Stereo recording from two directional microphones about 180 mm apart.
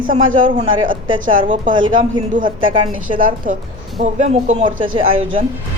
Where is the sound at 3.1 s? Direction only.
50° right (ahead or behind).